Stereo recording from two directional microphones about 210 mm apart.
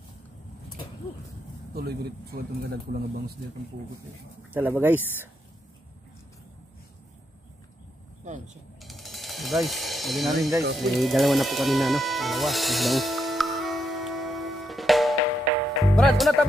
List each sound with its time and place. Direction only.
1.7 s speech: 45° right (ahead or behind)
4.6 s speech: 10° right (ahead or behind)
8.8 s a sound: centre (ahead or behind)
10.8 s music: centre (ahead or behind)